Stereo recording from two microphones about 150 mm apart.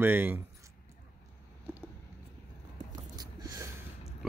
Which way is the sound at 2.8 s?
50° right (ahead or behind).